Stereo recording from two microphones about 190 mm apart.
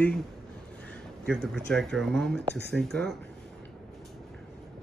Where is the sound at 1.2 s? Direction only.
Centre (ahead or behind).